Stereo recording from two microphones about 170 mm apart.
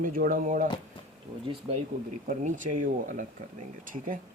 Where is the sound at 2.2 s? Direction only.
50° right (ahead or behind).